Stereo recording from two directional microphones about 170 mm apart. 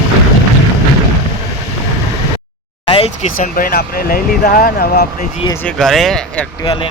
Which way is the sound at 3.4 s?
55° left (ahead or behind).